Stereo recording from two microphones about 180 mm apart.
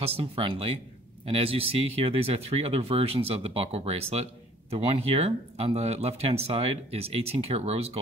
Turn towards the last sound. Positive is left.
turn(degrees=-35)  # may be behind; listen again after turning